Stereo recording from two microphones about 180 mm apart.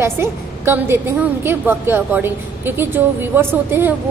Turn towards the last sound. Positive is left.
turn(degrees=-10)  # may be behind; listen again after turning